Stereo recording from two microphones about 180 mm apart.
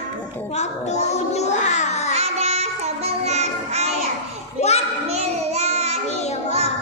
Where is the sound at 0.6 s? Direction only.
40° left (ahead or behind).